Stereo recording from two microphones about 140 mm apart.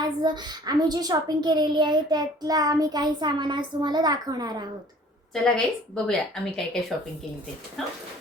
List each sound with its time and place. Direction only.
0.0 s a child's voice: 30° right (ahead or behind)
5.3 s a woman's voice: 5° left (ahead or behind)